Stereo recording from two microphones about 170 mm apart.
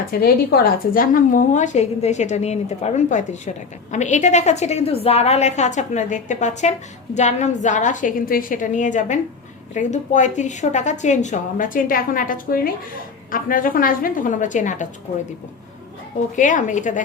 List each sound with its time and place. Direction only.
0.1 s a woman's voice: 60° left (ahead or behind)
16.3 s a woman's voice: 50° left (ahead or behind)